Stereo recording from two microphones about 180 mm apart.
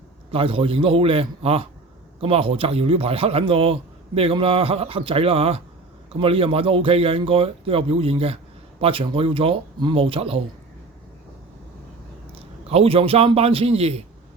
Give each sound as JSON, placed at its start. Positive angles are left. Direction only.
{"t": 0.3, "sound": "a man's voice", "side_deg": -30}
{"t": 12.3, "sound": "a man's voice", "side_deg": -35}